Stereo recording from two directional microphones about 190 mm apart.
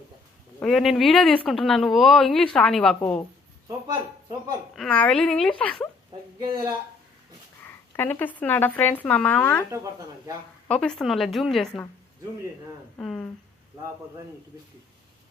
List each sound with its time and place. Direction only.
0.6 s a woman's voice: centre (ahead or behind)
4.7 s a woman's voice: 5° left (ahead or behind)
6.4 s speech: 20° right (ahead or behind)
7.9 s speech: 10° left (ahead or behind)
10.7 s a woman's voice: 5° left (ahead or behind)
13.0 s a woman's voice: 5° left (ahead or behind)